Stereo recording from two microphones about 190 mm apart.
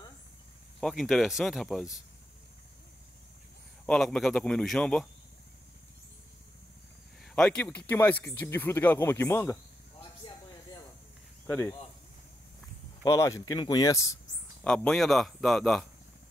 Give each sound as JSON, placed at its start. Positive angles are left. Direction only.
{"t": 0.7, "sound": "speech", "side_deg": 0}
{"t": 3.8, "sound": "speech", "side_deg": 5}
{"t": 7.2, "sound": "speech", "side_deg": 5}
{"t": 11.4, "sound": "speech", "side_deg": 10}
{"t": 13.0, "sound": "speech", "side_deg": 15}
{"t": 14.6, "sound": "speech", "side_deg": 5}